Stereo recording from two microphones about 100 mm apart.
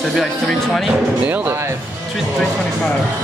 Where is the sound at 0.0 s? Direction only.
Centre (ahead or behind).